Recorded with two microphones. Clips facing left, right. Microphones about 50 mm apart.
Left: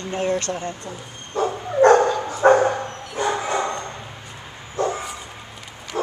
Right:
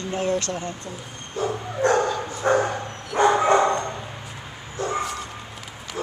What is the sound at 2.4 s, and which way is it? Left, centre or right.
Dog, left.